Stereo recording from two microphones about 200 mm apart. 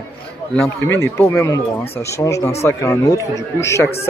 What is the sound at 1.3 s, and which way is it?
Speech, 15° left (ahead or behind).